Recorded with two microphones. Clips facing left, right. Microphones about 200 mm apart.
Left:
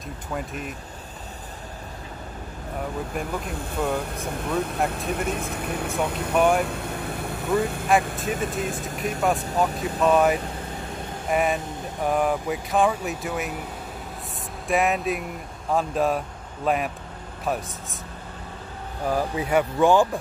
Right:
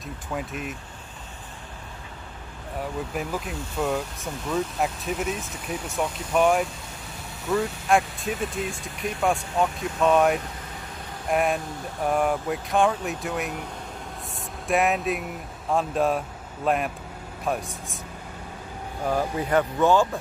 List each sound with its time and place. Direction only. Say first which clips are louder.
0.3 s speech: even; centre (ahead or behind)
3.1 s speech: left 1 dB; centre (ahead or behind)
4.8 s speech: left 1 dB; 60° left (ahead or behind)
6.3 s speech: even; centre (ahead or behind)
6.6 s vehicle: left 4 dB; 60° left (ahead or behind)
8.2 s speech: left 2 dB; centre (ahead or behind)
8.5 s speech: left 3 dB; 45° left (ahead or behind)
9.2 s speech: even; centre (ahead or behind)
14.7 s speech: even; centre (ahead or behind)
19.0 s speech: left 1 dB; 5° left (ahead or behind)